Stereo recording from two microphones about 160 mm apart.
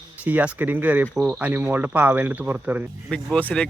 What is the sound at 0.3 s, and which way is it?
Speech, 10° right (ahead or behind).